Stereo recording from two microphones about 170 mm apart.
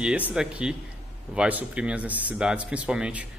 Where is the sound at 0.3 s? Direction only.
5° right (ahead or behind).